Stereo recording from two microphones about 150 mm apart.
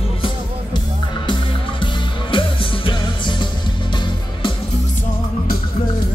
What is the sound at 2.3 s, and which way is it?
Music, 35° left (ahead or behind).